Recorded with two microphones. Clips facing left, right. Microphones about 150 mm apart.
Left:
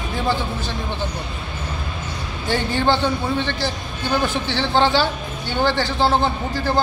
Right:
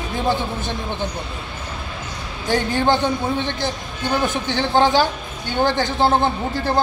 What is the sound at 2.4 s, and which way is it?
A man's voice, 15° right (ahead or behind).